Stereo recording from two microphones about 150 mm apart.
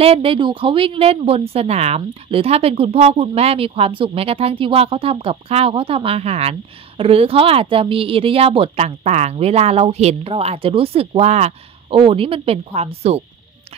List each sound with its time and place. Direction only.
0.0 s a woman's voice: 40° right (ahead or behind)